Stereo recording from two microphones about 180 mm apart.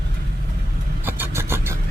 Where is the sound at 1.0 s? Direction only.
10° right (ahead or behind).